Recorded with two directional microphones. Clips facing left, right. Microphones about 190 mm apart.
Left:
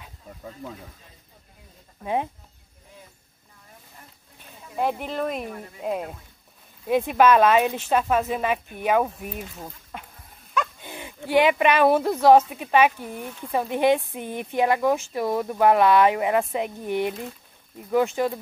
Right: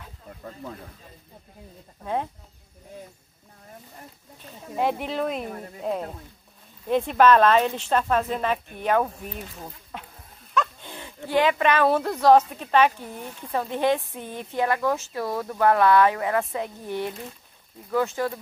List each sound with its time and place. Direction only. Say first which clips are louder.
0.4 s speech: even; 5° left (ahead or behind)
4.7 s a woman's voice: right 1 dB; centre (ahead or behind)
10.5 s a woman's voice: right 1 dB; 5° left (ahead or behind)